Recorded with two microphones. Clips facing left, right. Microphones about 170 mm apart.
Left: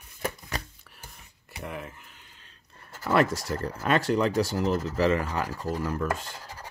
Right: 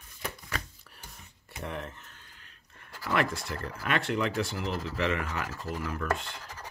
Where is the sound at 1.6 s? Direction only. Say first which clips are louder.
Even; 5° left (ahead or behind).